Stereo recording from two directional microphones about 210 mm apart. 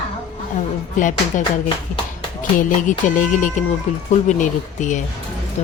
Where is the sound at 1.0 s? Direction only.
35° left (ahead or behind).